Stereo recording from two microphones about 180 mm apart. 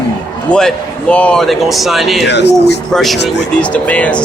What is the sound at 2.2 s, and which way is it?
Speech, 70° left (ahead or behind).